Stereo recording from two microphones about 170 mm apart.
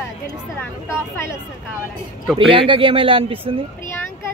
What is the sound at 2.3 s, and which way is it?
Speech, 30° right (ahead or behind).